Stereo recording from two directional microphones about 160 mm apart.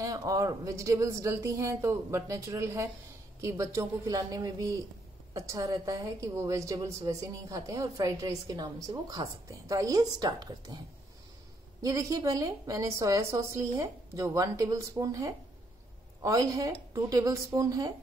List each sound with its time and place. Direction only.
0.0 s a woman's voice: 20° right (ahead or behind)
11.8 s a woman's voice: 20° right (ahead or behind)